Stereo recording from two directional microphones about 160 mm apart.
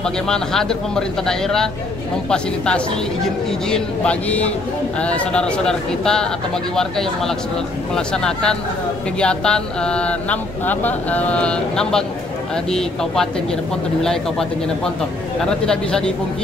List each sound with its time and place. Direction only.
0.0 s speech: 5° left (ahead or behind)
15.6 s speech: 5° left (ahead or behind)